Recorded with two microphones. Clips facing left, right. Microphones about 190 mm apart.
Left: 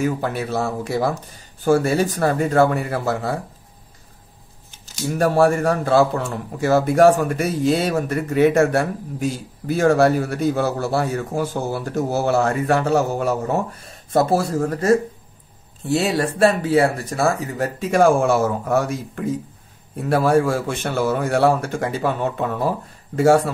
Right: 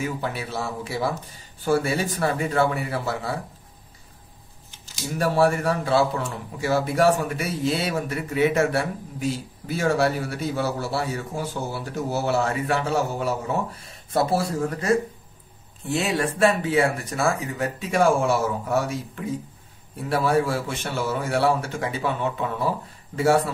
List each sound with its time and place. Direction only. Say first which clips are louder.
0.0 s a man's voice: left 6 dB; 45° left (ahead or behind)
5.2 s a man's voice: left 4 dB; 50° left (ahead or behind)